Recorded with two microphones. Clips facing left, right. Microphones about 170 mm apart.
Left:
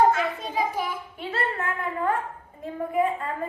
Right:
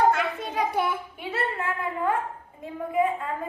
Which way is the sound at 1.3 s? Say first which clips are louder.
Even; 10° right (ahead or behind).